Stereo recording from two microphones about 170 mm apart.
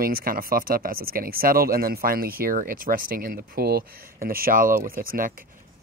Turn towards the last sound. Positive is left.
turn(degrees=-55)  # may be behind; listen again after turning